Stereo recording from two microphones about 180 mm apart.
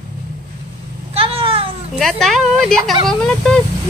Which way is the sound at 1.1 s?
30° right (ahead or behind).